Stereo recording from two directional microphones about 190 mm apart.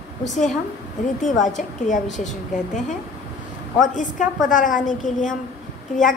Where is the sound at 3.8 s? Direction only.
40° left (ahead or behind).